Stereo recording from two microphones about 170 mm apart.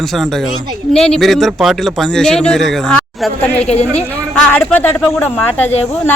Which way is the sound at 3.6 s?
35° left (ahead or behind).